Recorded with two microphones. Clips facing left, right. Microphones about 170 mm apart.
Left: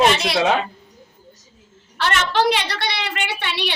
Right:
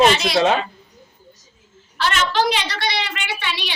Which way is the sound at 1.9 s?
60° left (ahead or behind).